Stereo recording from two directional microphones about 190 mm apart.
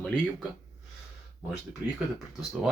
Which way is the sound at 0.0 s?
5° left (ahead or behind).